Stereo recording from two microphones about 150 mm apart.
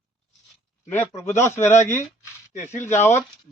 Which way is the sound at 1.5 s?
20° left (ahead or behind).